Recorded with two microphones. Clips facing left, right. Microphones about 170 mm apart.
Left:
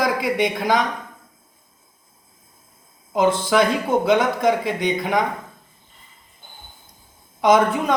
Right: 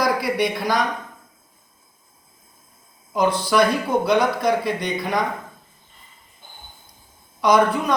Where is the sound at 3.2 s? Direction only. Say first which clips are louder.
Even; 25° left (ahead or behind).